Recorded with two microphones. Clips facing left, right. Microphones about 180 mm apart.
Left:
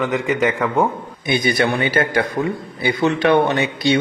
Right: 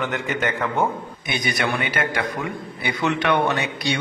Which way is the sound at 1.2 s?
30° left (ahead or behind).